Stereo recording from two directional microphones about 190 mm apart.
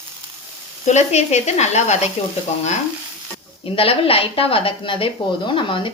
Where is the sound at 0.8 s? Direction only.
35° left (ahead or behind).